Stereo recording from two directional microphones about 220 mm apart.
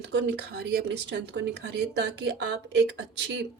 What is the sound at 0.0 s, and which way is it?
Speech, 50° right (ahead or behind).